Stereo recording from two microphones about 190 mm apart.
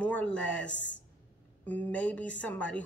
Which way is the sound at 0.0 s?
5° left (ahead or behind).